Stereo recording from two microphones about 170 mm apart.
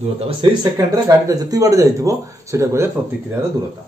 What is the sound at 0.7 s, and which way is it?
Speech, 20° right (ahead or behind).